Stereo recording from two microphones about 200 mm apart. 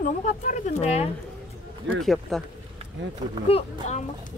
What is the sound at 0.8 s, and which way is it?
Speech, 35° left (ahead or behind).